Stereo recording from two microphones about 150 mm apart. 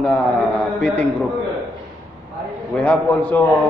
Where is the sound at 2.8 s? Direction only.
10° left (ahead or behind).